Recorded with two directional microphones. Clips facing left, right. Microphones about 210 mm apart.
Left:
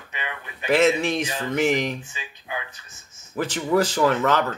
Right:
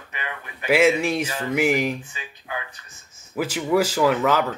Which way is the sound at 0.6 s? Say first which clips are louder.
Right 1 dB; 10° right (ahead or behind).